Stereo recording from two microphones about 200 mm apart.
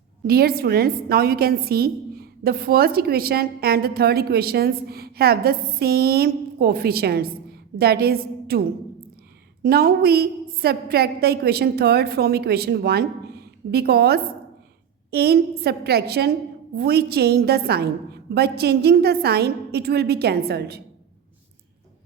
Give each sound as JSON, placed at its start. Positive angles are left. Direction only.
{"t": 0.3, "sound": "a woman's voice", "side_deg": -50}
{"t": 9.6, "sound": "a woman's voice", "side_deg": -50}